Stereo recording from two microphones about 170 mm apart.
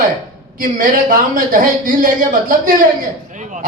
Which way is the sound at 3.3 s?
45° right (ahead or behind).